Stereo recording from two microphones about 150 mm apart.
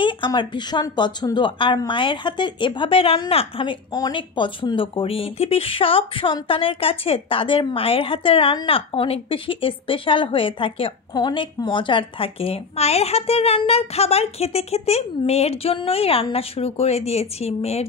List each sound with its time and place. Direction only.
0.0 s speech: 30° left (ahead or behind)